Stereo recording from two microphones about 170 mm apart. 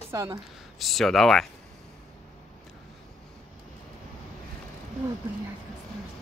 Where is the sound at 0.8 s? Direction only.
Centre (ahead or behind).